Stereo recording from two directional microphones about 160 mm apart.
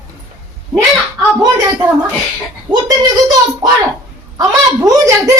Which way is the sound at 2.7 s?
10° right (ahead or behind).